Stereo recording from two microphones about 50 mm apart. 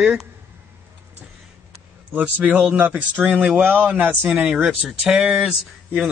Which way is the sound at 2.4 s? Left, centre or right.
Right.